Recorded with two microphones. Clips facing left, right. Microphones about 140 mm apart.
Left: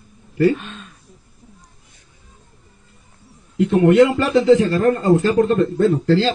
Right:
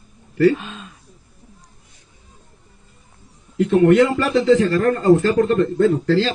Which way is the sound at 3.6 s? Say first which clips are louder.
Left 1 dB; 20° left (ahead or behind).